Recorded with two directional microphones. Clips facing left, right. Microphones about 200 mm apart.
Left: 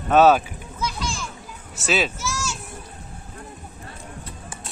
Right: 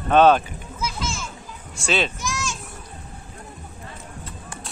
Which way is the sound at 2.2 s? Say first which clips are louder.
Even; 15° right (ahead or behind).